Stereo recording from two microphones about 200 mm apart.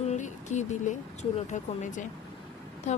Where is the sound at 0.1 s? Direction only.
35° left (ahead or behind).